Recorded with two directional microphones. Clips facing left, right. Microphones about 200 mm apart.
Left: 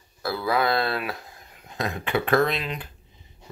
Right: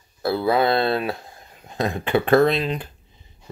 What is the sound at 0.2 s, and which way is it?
Speech, 25° right (ahead or behind).